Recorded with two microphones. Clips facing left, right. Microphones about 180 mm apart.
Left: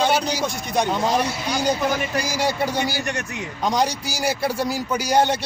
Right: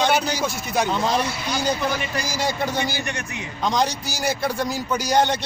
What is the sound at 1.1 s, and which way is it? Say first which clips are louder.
Speech: left 1 dB; 40° left (ahead or behind).